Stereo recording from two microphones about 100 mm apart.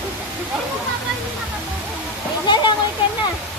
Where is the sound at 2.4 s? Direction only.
50° left (ahead or behind).